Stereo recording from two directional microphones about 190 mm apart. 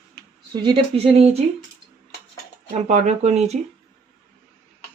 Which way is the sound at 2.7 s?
35° right (ahead or behind).